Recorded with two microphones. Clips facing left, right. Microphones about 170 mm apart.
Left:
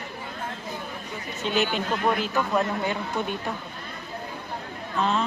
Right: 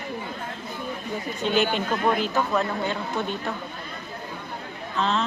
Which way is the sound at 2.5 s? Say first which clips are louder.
Even; 10° left (ahead or behind).